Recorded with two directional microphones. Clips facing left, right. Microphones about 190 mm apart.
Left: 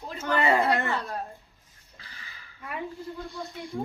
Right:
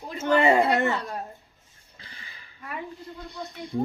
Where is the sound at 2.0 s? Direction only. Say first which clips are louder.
Right 1 dB; 25° right (ahead or behind).